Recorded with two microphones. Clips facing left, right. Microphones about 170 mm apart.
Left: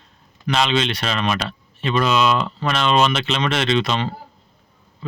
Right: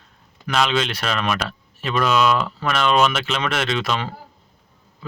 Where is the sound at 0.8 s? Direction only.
25° left (ahead or behind).